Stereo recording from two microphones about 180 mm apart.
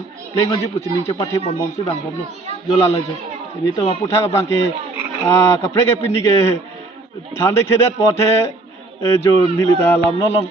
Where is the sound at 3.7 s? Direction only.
30° left (ahead or behind).